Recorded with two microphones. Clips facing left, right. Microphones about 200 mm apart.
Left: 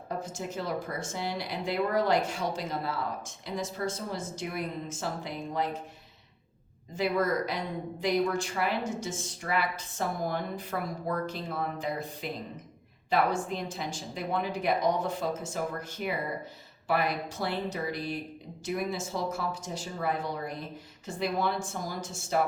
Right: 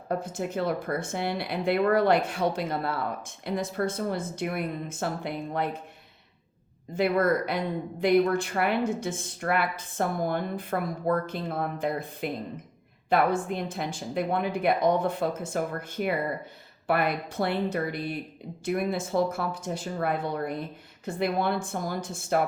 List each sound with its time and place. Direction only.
0.1 s speech: 60° right (ahead or behind)
6.9 s speech: 60° right (ahead or behind)